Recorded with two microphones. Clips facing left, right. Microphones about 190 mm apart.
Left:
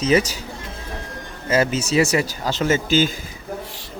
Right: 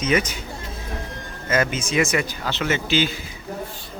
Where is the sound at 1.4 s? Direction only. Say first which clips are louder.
Left 3 dB; 30° left (ahead or behind).